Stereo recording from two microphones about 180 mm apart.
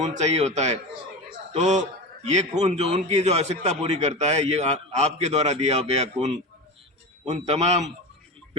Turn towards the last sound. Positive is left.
turn(degrees=-40)  # may be behind; listen again after turning